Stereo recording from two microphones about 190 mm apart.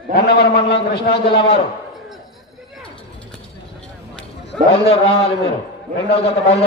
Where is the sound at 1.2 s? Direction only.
30° left (ahead or behind).